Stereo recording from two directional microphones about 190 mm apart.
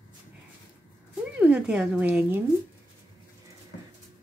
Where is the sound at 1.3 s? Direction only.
5° right (ahead or behind).